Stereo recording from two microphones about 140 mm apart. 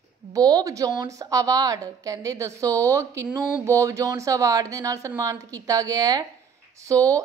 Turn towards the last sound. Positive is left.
turn(degrees=-25)  # may be behind; listen again after turning